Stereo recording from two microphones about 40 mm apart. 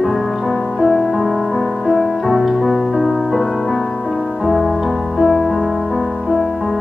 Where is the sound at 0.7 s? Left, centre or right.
Centre.